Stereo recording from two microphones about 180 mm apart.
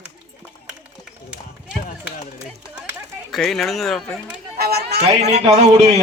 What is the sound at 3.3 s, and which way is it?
Speech, centre (ahead or behind).